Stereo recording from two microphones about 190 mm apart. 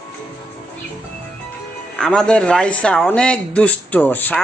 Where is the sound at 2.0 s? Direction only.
5° left (ahead or behind).